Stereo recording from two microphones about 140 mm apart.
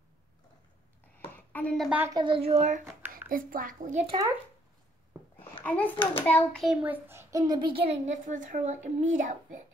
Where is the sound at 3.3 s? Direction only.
85° right.